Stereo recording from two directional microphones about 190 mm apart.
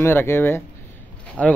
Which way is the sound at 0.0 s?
10° left (ahead or behind).